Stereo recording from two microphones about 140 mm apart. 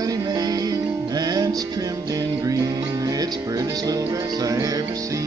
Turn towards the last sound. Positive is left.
turn(degrees=-25)  # may be behind; listen again after turning